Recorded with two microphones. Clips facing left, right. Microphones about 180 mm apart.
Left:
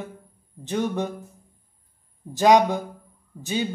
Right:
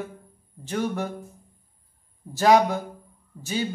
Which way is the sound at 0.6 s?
20° left (ahead or behind).